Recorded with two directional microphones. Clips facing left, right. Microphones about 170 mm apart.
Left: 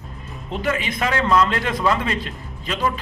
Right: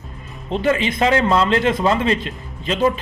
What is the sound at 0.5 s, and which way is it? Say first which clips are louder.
A man's voice: right 5 dB; 25° right (ahead or behind).